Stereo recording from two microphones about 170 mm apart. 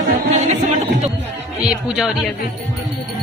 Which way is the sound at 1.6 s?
5° right (ahead or behind).